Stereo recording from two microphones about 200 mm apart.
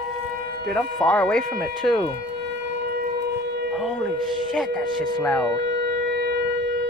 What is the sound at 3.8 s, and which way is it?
Speech, centre (ahead or behind).